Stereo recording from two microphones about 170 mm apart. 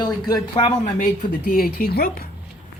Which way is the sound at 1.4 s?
65° left (ahead or behind).